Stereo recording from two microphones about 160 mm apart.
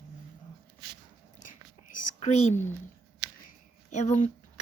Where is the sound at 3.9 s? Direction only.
45° left (ahead or behind).